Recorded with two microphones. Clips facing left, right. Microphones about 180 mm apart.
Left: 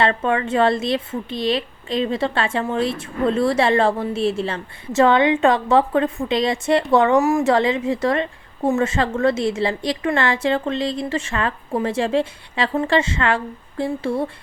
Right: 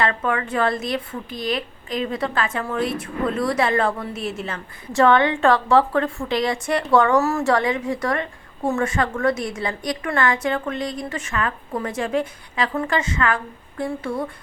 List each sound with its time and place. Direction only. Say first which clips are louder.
0.0 s a woman's voice: left 3 dB; 25° left (ahead or behind)